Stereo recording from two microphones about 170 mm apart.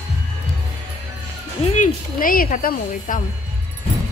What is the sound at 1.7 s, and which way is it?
Speech, 50° left (ahead or behind).